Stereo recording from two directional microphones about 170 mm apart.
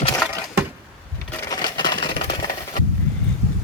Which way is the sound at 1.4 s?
25° left (ahead or behind).